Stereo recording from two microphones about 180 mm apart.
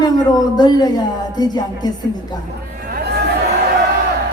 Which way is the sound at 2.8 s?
65° right (ahead or behind).